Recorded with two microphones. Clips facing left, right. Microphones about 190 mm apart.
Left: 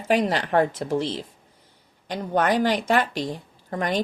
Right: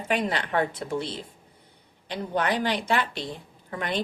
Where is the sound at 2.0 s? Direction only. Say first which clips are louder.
Left 4 dB; 45° left (ahead or behind).